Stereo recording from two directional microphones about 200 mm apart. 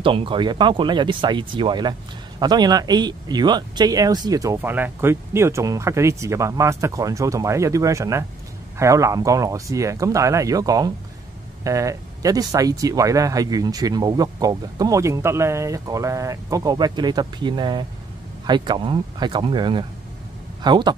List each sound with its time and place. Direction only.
0.0 s speech: 25° right (ahead or behind)